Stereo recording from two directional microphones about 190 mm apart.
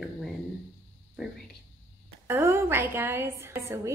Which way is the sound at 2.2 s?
15° right (ahead or behind).